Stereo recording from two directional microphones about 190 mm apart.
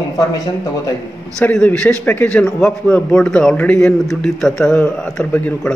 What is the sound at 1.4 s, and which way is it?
A man's voice, 10° left (ahead or behind).